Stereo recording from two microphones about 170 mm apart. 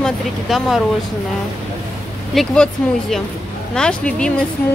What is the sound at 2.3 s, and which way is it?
Speech, 5° left (ahead or behind).